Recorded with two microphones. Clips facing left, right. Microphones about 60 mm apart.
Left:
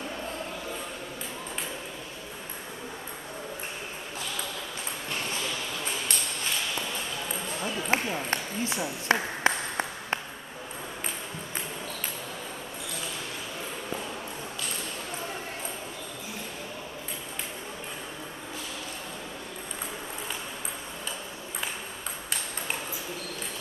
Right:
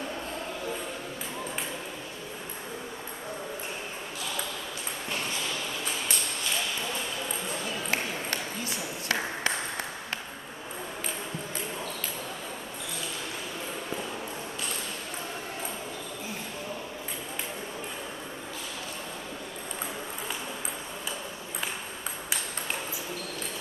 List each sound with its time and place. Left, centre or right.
7.6 s ping: left